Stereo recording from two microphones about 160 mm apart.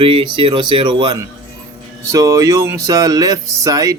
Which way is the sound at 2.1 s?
20° right (ahead or behind).